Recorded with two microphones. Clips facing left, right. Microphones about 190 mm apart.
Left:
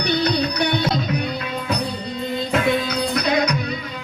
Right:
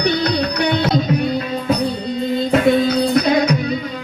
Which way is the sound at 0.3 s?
65° right (ahead or behind).